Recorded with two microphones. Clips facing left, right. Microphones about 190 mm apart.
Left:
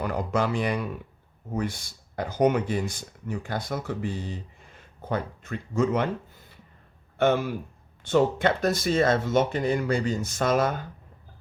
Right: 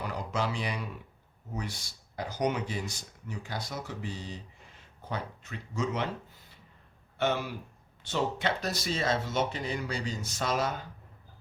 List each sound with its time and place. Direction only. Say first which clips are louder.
0.0 s speech: left 7 dB; 55° left (ahead or behind)
7.2 s speech: left 7 dB; 50° left (ahead or behind)